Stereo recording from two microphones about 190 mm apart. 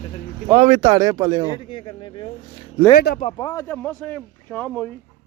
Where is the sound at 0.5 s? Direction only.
30° right (ahead or behind).